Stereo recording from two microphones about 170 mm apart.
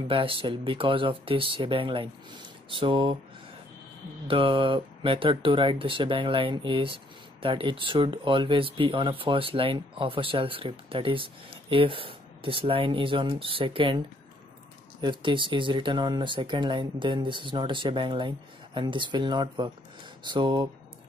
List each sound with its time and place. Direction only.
0.1 s speech: 30° right (ahead or behind)
4.3 s speech: 30° right (ahead or behind)